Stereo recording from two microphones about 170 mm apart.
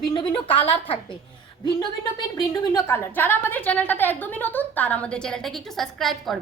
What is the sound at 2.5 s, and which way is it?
A woman's voice, 15° left (ahead or behind).